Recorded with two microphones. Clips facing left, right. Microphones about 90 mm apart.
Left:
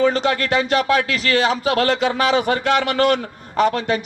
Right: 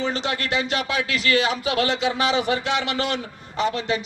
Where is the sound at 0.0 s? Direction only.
45° left (ahead or behind).